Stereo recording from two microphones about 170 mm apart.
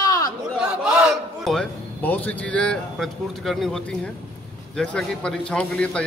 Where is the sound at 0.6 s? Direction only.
5° right (ahead or behind).